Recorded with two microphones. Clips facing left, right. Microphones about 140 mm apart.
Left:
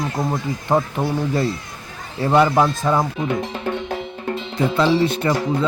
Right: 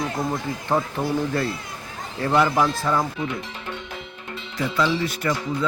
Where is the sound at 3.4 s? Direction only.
45° left (ahead or behind).